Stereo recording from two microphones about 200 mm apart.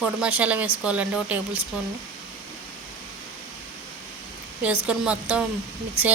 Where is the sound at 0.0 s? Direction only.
5° right (ahead or behind).